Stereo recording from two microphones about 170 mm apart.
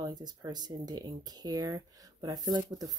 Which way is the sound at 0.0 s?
25° right (ahead or behind).